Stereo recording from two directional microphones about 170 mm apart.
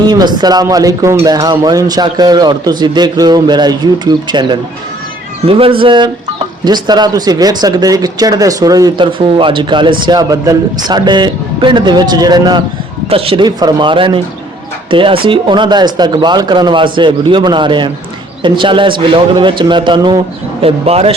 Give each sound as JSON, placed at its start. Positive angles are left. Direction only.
{"t": 0.0, "sound": "speech", "side_deg": -25}